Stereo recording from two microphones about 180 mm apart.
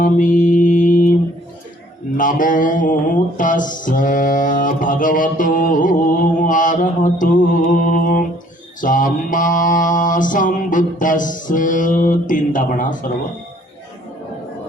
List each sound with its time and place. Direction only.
0.0 s mantra: 45° left (ahead or behind)
2.1 s mantra: 50° left (ahead or behind)